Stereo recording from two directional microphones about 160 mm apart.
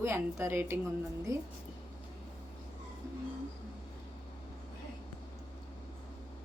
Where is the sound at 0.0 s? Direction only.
15° right (ahead or behind).